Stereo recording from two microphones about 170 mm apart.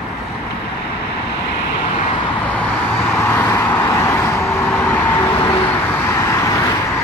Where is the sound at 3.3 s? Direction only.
15° left (ahead or behind).